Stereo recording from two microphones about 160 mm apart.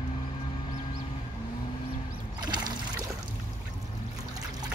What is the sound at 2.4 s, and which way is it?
Boat, 25° right (ahead or behind).